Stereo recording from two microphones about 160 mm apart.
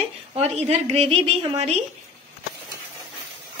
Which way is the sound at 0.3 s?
40° right (ahead or behind).